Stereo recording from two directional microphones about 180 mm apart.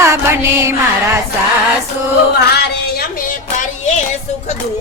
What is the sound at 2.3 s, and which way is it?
Music, 65° left (ahead or behind).